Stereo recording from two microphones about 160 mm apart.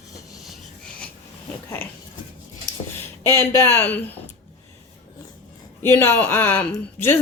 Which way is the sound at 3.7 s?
10° left (ahead or behind).